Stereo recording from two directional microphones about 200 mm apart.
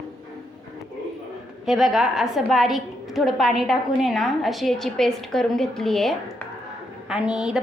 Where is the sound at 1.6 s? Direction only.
Centre (ahead or behind).